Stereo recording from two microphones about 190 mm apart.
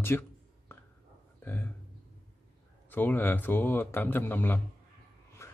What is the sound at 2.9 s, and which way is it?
Speech, 10° left (ahead or behind).